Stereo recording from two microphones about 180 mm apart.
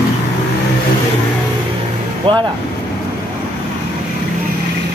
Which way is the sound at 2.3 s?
30° right (ahead or behind).